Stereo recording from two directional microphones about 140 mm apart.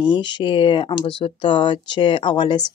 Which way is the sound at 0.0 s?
35° left (ahead or behind).